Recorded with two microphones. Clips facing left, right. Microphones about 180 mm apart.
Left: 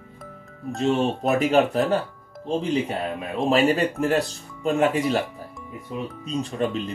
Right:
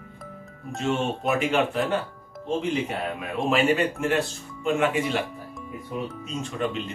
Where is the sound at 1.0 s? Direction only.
40° left (ahead or behind).